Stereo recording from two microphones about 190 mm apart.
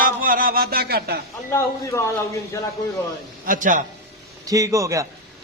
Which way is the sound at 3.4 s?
45° right (ahead or behind).